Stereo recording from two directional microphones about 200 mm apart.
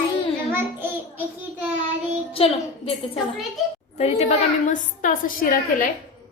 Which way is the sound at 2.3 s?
30° left (ahead or behind).